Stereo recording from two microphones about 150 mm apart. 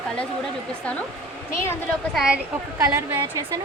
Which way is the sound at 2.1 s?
5° right (ahead or behind).